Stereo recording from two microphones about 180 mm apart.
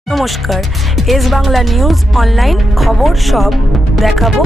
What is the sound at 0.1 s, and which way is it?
Speech, centre (ahead or behind).